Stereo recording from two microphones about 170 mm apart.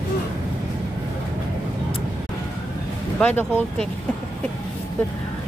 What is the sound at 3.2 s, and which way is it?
Speech, 10° left (ahead or behind).